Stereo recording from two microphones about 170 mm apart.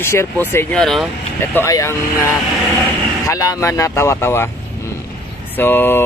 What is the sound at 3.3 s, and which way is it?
Speech, 20° left (ahead or behind).